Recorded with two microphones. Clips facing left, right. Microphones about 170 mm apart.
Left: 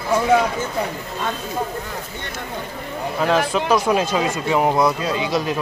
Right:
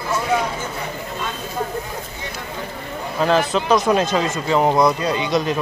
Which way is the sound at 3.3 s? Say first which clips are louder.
Right 1 dB; 5° left (ahead or behind).